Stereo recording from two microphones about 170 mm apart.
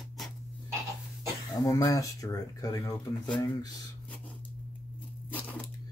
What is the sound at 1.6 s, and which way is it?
Speech, 20° left (ahead or behind).